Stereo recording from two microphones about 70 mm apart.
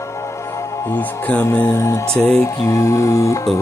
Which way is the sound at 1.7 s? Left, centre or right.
Left.